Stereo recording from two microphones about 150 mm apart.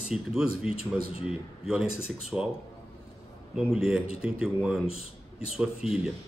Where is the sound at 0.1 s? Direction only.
5° right (ahead or behind).